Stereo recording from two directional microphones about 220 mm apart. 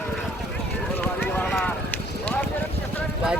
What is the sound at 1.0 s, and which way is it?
Clip-clop, 10° left (ahead or behind).